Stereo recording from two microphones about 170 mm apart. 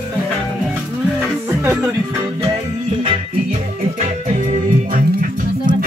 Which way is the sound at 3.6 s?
45° right (ahead or behind).